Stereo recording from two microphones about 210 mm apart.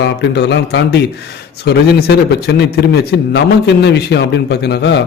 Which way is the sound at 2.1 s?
50° left (ahead or behind).